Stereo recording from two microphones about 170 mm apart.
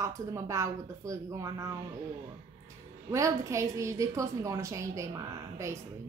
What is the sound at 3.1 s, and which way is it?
A woman's voice, 15° right (ahead or behind).